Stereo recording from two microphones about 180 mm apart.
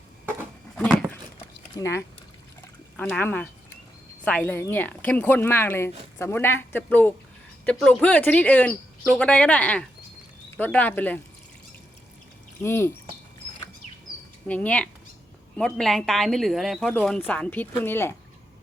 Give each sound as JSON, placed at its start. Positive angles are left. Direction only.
{"t": 1.8, "sound": "speech", "side_deg": 15}
{"t": 12.6, "sound": "speech", "side_deg": 10}
{"t": 14.4, "sound": "speech", "side_deg": 5}